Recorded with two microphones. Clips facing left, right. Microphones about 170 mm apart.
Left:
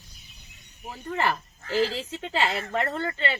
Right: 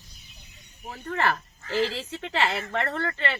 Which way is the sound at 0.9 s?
10° left (ahead or behind).